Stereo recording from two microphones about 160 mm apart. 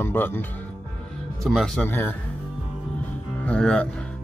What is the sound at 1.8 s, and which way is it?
Speech, 15° left (ahead or behind).